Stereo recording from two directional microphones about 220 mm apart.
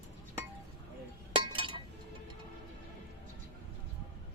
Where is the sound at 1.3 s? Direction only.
25° right (ahead or behind).